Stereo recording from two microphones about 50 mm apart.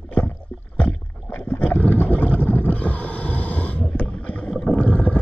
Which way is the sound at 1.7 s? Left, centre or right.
Left.